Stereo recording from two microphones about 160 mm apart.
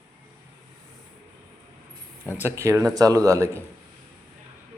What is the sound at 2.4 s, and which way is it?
Speech, 15° right (ahead or behind).